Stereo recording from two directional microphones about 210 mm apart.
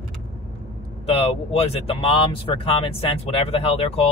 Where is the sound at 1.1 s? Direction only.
25° left (ahead or behind).